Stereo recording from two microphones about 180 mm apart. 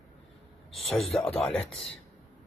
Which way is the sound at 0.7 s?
Centre (ahead or behind).